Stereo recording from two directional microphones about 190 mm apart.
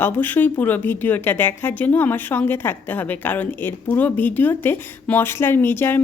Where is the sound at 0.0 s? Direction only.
10° left (ahead or behind).